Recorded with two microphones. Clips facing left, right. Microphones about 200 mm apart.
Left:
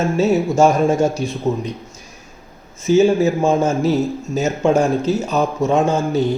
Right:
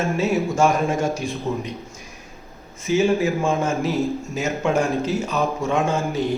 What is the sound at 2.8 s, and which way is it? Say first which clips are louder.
A man's voice: left 6 dB; 30° left (ahead or behind).